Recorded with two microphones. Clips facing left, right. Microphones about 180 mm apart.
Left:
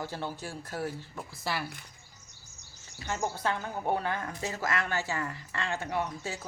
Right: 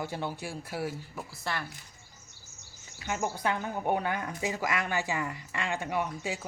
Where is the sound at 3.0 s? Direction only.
15° right (ahead or behind).